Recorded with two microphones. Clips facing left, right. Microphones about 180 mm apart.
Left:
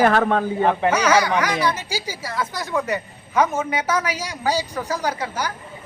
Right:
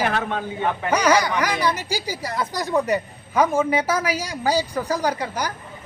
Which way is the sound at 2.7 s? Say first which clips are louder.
Right 3 dB; 35° right (ahead or behind).